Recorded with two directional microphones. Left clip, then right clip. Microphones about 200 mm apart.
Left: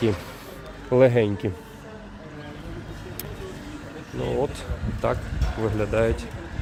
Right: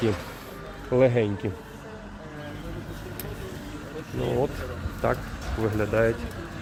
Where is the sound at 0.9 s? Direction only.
40° left (ahead or behind).